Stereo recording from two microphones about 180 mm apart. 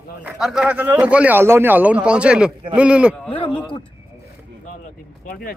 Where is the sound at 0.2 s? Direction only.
Centre (ahead or behind).